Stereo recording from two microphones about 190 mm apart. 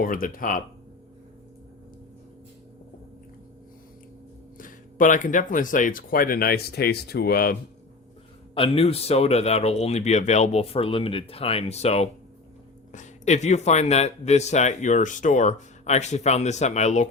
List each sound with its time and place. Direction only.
0.0 s speech: 45° left (ahead or behind)
4.5 s speech: 45° left (ahead or behind)
8.5 s speech: 30° left (ahead or behind)